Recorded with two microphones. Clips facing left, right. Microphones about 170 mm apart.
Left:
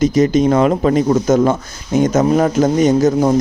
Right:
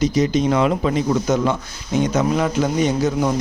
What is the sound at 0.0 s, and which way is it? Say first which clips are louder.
Speech: left 5 dB; 50° left (ahead or behind).